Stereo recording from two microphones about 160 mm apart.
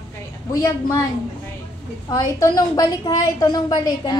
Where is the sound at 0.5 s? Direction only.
20° left (ahead or behind).